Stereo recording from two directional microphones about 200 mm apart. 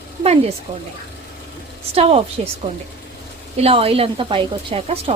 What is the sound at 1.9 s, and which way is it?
Speech, 30° right (ahead or behind).